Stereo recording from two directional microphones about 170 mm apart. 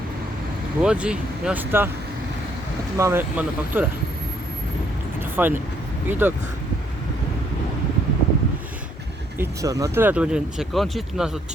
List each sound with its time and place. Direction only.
0.8 s speech: 5° right (ahead or behind)
3.0 s speech: 15° right (ahead or behind)
5.4 s speech: 10° right (ahead or behind)
9.4 s speech: 20° right (ahead or behind); by 11.3 s centre (ahead or behind)